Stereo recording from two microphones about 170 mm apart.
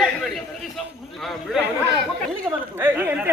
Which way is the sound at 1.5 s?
5° right (ahead or behind).